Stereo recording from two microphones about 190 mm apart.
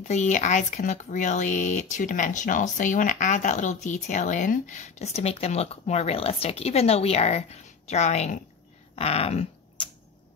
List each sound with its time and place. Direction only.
0.1 s speech: 40° left (ahead or behind)
8.9 s typing: 30° left (ahead or behind)